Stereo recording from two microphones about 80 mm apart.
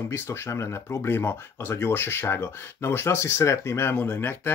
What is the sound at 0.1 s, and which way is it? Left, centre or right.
Speech, left.